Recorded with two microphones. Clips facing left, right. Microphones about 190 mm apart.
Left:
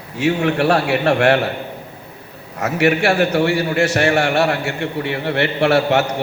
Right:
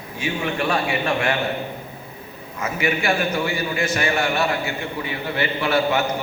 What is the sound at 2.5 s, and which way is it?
A man's voice, 70° left (ahead or behind).